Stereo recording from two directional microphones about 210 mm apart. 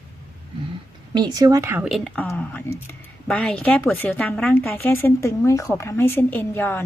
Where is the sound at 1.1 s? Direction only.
20° right (ahead or behind).